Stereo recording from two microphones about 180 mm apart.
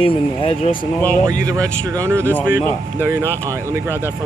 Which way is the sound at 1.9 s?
15° right (ahead or behind).